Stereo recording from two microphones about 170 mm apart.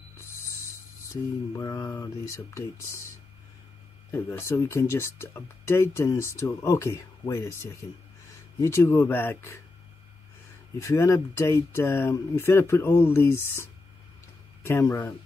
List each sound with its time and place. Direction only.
1.6 s speech: 20° left (ahead or behind)
4.1 s speech: 15° left (ahead or behind)
10.8 s speech: 15° left (ahead or behind)